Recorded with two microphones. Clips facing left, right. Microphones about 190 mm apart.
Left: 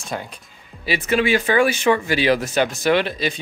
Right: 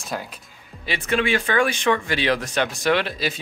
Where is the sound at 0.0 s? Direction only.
Centre (ahead or behind).